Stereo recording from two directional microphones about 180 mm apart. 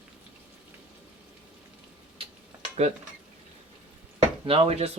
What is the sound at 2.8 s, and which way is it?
Speech, 40° right (ahead or behind).